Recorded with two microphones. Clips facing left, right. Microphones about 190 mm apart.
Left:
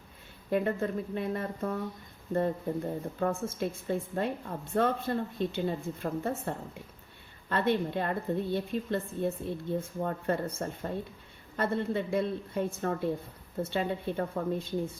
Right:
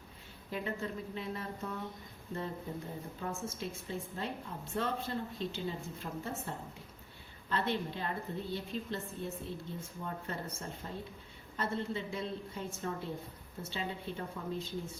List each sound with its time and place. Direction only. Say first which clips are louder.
0.5 s speech: left 9 dB; 55° left (ahead or behind)
3.2 s a woman's voice: left 9 dB; 55° left (ahead or behind)
7.5 s a woman's voice: left 7 dB; 55° left (ahead or behind)